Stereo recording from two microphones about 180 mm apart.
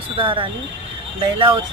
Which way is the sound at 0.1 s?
30° right (ahead or behind).